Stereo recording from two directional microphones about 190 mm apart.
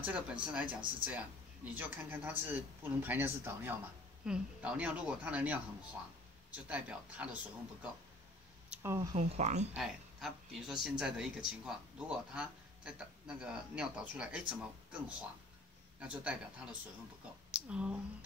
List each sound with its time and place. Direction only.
0.0 s speech: 10° right (ahead or behind)
9.1 s speech: 40° right (ahead or behind)
9.8 s speech: centre (ahead or behind)